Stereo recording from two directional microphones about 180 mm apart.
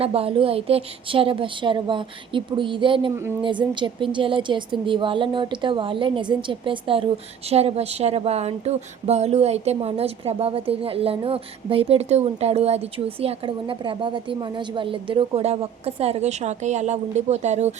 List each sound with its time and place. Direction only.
0.0 s a woman's voice: 30° right (ahead or behind)